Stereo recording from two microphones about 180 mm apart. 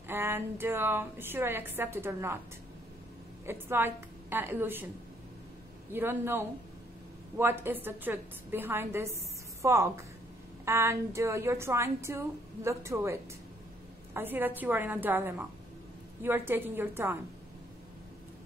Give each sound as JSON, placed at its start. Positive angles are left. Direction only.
{"t": 0.1, "sound": "a woman's voice", "side_deg": -10}
{"t": 3.4, "sound": "a woman's voice", "side_deg": -10}
{"t": 5.9, "sound": "a woman's voice", "side_deg": -10}